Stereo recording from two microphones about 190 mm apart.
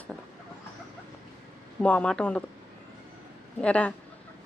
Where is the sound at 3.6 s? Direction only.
5° left (ahead or behind).